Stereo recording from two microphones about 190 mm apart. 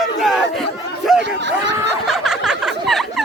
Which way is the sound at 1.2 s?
65° right (ahead or behind).